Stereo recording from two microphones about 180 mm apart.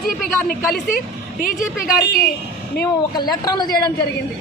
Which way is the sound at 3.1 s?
20° left (ahead or behind).